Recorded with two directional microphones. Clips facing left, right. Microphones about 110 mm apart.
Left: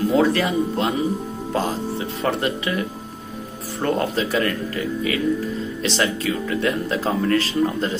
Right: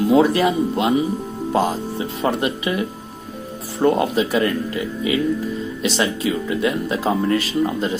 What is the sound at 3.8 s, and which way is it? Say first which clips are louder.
Speech: right 5 dB; 15° right (ahead or behind).